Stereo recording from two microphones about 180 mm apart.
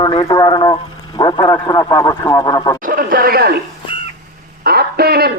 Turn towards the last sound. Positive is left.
turn(degrees=-60)  # may be behind; listen again after turning